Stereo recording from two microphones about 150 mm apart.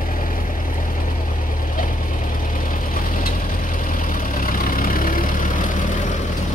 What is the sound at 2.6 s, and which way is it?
Vehicle, 65° left (ahead or behind).